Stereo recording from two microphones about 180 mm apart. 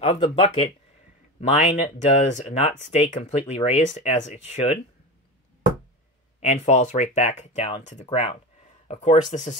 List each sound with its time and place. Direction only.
0.0 s speech: 35° left (ahead or behind)
6.4 s speech: 40° left (ahead or behind)